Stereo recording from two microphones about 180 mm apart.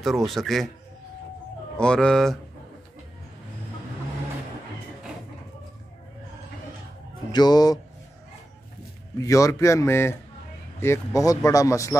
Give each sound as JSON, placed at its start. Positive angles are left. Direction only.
{"t": 0.0, "sound": "speech", "side_deg": 0}
{"t": 1.8, "sound": "speech", "side_deg": 5}
{"t": 7.3, "sound": "speech", "side_deg": 20}
{"t": 9.2, "sound": "speech", "side_deg": 15}